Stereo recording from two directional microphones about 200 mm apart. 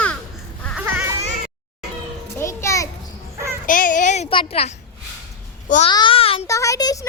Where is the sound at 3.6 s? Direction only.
40° left (ahead or behind).